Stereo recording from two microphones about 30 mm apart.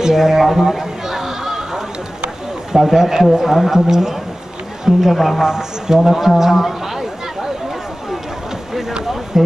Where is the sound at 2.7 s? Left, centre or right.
Centre.